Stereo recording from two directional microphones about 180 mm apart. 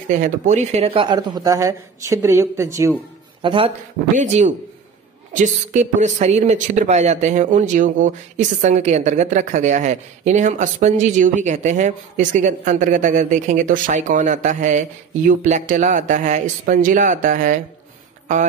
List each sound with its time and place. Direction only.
0.1 s speech: 45° right (ahead or behind); by 2.9 s 15° right (ahead or behind)
3.4 s speech: 30° right (ahead or behind)
4.1 s a woman's voice: 40° right (ahead or behind)